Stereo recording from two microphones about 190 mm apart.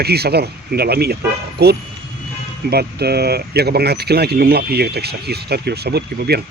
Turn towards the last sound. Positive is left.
turn(degrees=-60)  # may be behind; listen again after turning